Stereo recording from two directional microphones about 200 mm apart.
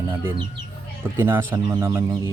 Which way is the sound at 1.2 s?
10° right (ahead or behind).